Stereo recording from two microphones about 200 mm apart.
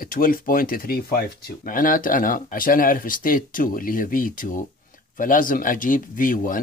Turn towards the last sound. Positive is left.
turn(degrees=45)  # may be behind; listen again after turning